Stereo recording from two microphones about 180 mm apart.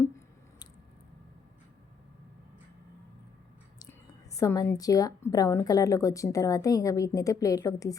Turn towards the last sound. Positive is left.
turn(degrees=20)  # may be behind; listen again after turning